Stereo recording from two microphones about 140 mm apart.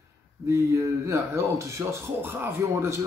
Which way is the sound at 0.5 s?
20° right (ahead or behind).